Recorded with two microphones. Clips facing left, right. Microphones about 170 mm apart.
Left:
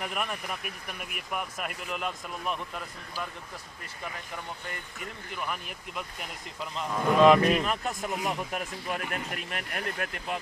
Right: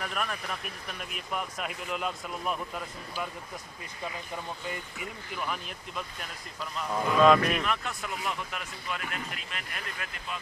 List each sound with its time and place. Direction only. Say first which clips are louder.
0.0 s speech: left 1 dB; 15° left (ahead or behind); by 3.3 s 5° right (ahead or behind)
4.9 s speech: right 1 dB; centre (ahead or behind); by 7.4 s 20° left (ahead or behind)
7.4 s speech: left 4 dB; 35° left (ahead or behind); by 10.4 s 55° left (ahead or behind)